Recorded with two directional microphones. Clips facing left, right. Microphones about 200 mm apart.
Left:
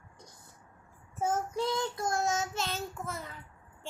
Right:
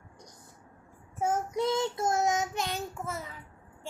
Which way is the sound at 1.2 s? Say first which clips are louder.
Right 2 dB; 15° right (ahead or behind).